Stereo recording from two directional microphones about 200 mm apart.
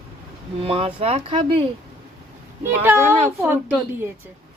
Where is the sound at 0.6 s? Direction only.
30° right (ahead or behind).